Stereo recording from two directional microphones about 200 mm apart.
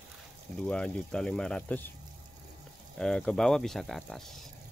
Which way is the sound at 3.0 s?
5° left (ahead or behind).